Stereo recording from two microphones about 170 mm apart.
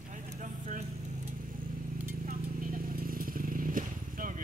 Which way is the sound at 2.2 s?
55° right (ahead or behind).